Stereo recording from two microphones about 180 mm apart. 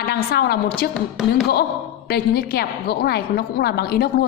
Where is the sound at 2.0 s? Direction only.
60° left (ahead or behind).